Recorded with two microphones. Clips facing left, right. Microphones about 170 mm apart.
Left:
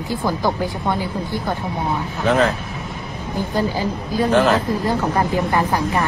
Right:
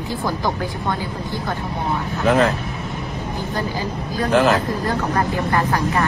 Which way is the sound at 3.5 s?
15° left (ahead or behind).